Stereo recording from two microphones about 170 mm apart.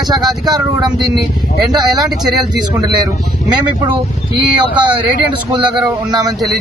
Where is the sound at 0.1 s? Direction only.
25° right (ahead or behind).